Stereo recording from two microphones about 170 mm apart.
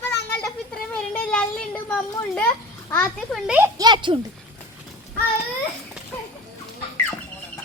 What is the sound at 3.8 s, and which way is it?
Speech, 25° right (ahead or behind).